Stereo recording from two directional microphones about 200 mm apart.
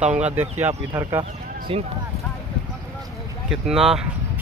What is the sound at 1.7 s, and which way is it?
Speech, 30° right (ahead or behind).